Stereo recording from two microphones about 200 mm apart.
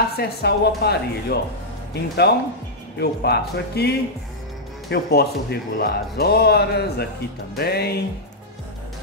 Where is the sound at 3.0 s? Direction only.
55° left (ahead or behind).